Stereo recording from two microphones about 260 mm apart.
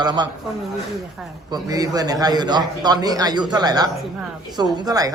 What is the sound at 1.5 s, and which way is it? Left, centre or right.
A man's voice, centre.